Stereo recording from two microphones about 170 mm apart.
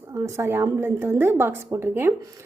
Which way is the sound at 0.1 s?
15° right (ahead or behind).